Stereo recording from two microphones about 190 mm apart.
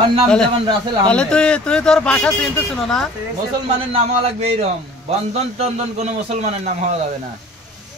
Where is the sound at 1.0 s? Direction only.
5° left (ahead or behind).